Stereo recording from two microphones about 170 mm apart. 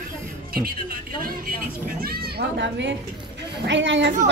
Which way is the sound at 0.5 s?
60° right (ahead or behind).